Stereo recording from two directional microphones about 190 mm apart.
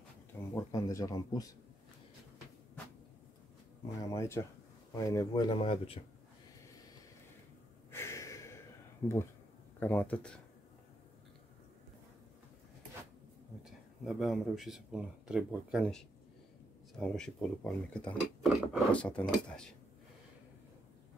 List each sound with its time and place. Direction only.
0.4 s speech: 15° left (ahead or behind)
4.1 s speech: 15° left (ahead or behind)
7.9 s a sound: 15° left (ahead or behind)
9.0 s speech: 10° left (ahead or behind)
13.7 s speech: centre (ahead or behind)